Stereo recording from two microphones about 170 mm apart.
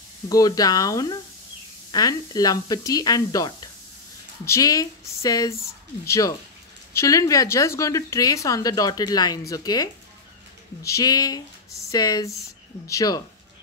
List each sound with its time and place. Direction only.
0.3 s speech: 20° left (ahead or behind)